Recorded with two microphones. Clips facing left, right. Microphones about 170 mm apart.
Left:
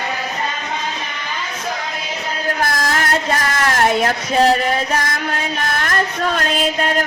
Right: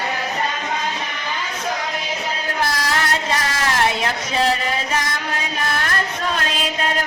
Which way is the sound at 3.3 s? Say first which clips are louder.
Left 3 dB; 50° left (ahead or behind).